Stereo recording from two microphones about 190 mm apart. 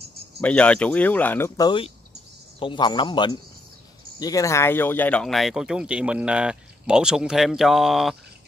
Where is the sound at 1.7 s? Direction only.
25° left (ahead or behind).